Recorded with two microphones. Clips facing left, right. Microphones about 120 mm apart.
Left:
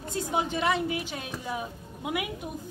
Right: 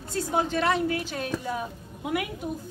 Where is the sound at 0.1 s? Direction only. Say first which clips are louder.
Right 3 dB; 15° left (ahead or behind).